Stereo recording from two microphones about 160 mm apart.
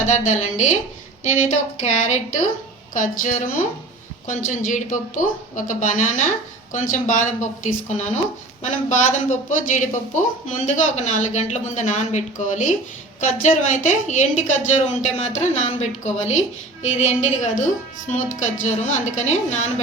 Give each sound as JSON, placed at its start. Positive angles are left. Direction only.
{"t": 0.0, "sound": "a woman's voice", "side_deg": 50}